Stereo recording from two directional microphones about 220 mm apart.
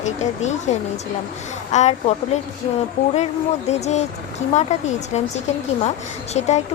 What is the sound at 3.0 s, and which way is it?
Speech, 30° left (ahead or behind).